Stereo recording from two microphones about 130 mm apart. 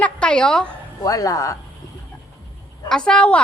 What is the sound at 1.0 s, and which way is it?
Speech, 25° left (ahead or behind).